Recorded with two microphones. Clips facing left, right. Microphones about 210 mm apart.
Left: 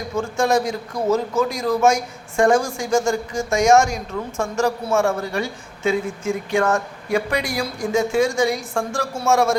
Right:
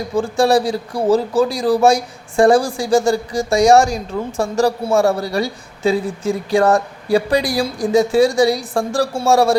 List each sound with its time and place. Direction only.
0.2 s a man's voice: 35° right (ahead or behind)